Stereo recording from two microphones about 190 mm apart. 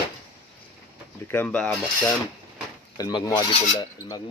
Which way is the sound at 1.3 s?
5° left (ahead or behind).